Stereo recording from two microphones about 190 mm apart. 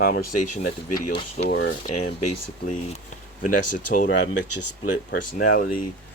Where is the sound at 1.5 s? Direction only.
65° left (ahead or behind).